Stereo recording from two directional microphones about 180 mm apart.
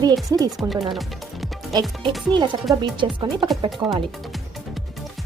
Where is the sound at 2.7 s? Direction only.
20° right (ahead or behind).